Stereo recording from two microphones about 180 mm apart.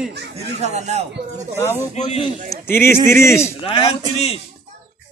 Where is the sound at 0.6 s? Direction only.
40° right (ahead or behind).